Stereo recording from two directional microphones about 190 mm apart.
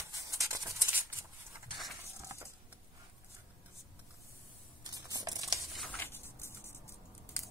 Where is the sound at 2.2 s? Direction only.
15° right (ahead or behind).